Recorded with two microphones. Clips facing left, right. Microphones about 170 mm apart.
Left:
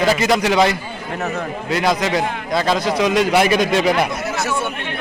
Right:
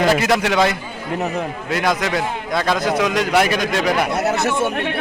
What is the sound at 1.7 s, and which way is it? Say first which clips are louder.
Speech: left 2 dB; centre (ahead or behind).